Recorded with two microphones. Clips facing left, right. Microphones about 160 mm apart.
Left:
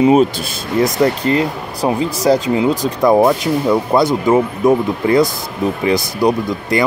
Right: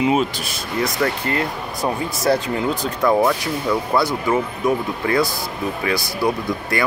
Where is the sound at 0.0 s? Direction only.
40° left (ahead or behind).